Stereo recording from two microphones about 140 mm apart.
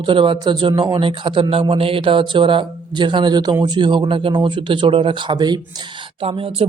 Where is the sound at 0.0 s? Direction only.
35° right (ahead or behind).